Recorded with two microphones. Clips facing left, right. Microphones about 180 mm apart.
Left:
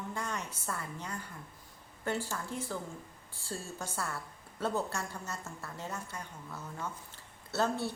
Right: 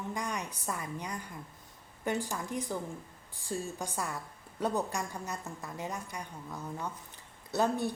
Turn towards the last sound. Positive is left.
turn(degrees=-15)  # may be behind; listen again after turning